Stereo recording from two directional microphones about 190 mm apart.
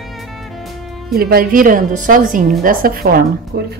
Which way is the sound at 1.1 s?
50° right (ahead or behind).